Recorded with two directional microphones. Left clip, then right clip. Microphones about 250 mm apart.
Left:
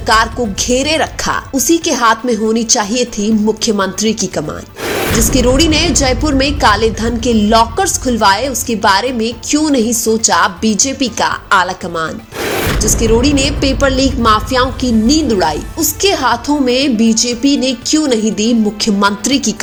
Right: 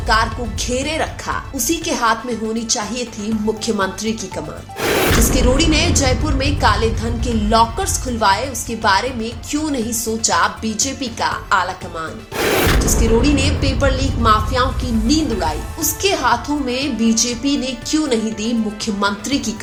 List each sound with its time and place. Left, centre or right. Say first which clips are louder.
0.1 s a woman's voice: left 6 dB; left
4.8 s music: right 1 dB; centre
5.3 s a woman's voice: left 5 dB; left
12.4 s a sound: right 1 dB; centre
12.8 s a woman's voice: left 5 dB; left